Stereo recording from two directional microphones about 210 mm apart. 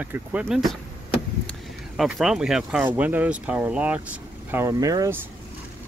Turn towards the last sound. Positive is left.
turn(degrees=-15)  # may be behind; listen again after turning